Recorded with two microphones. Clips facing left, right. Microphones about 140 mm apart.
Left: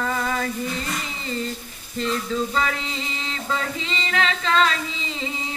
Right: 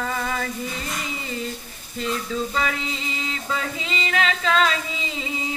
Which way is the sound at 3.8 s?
5° right (ahead or behind).